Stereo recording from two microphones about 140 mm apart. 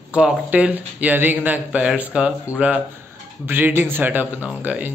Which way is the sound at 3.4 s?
15° right (ahead or behind).